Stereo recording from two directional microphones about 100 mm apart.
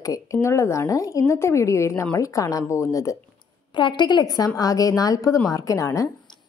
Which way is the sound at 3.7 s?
50° left (ahead or behind).